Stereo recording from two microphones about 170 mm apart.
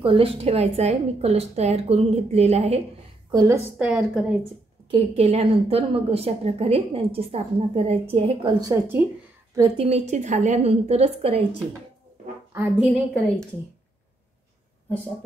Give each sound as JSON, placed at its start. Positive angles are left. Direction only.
{"t": 0.0, "sound": "a woman's voice", "side_deg": -35}
{"t": 3.3, "sound": "a woman's voice", "side_deg": -20}
{"t": 3.7, "sound": "a woman's voice", "side_deg": -5}
{"t": 4.9, "sound": "a woman's voice", "side_deg": -35}
{"t": 9.8, "sound": "a woman's voice", "side_deg": -40}
{"t": 12.8, "sound": "a woman's voice", "side_deg": 0}